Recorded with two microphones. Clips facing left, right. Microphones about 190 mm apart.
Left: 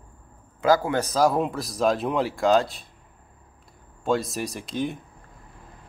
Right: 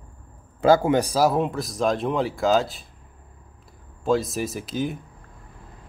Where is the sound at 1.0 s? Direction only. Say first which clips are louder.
Right 1 dB; 10° right (ahead or behind).